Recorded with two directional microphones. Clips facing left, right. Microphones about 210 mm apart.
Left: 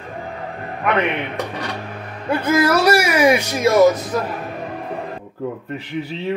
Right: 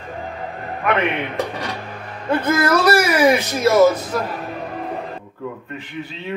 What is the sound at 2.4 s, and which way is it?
Speech, 10° left (ahead or behind).